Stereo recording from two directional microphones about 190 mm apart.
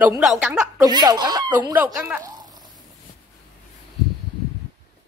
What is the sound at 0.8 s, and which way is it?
Speech, 20° right (ahead or behind).